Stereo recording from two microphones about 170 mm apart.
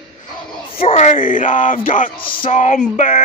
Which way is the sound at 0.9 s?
45° left (ahead or behind).